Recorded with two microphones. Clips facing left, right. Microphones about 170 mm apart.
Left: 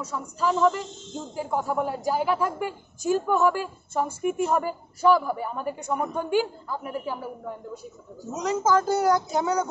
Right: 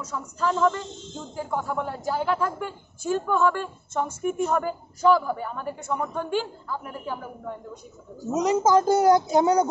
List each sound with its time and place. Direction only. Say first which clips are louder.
0.1 s a woman's voice: even; 5° left (ahead or behind)
8.4 s a woman's voice: right 3 dB; 15° right (ahead or behind)